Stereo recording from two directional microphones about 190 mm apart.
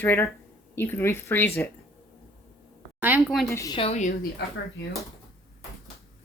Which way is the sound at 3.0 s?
10° right (ahead or behind).